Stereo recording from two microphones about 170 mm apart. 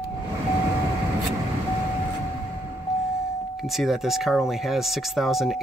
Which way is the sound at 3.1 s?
Centre (ahead or behind).